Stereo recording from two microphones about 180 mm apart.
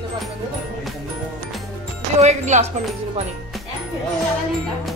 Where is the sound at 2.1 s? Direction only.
40° right (ahead or behind).